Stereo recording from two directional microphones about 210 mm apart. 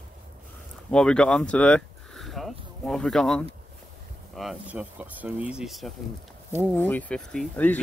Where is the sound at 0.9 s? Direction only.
5° left (ahead or behind).